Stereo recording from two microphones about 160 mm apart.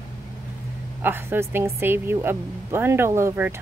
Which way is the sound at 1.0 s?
15° right (ahead or behind).